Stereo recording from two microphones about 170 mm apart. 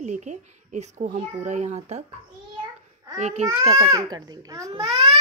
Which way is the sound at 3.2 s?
40° right (ahead or behind).